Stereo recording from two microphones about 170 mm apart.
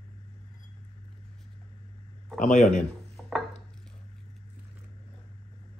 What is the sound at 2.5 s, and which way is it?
Speech, 45° left (ahead or behind).